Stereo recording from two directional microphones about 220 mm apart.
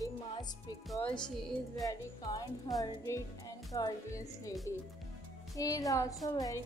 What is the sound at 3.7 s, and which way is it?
Speech, 15° left (ahead or behind).